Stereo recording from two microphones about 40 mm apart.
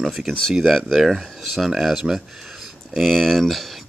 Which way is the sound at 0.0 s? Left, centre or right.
Centre.